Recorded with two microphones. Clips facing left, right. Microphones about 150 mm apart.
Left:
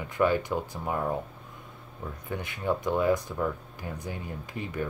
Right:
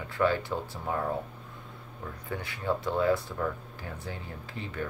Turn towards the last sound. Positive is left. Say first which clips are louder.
# left 3 dB
turn(degrees=15)  # may be behind; listen again after turning